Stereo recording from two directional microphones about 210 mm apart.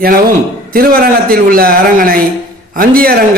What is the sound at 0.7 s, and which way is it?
Speech, 45° right (ahead or behind).